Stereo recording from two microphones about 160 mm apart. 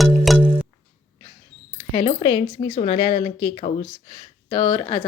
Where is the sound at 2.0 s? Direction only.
35° left (ahead or behind).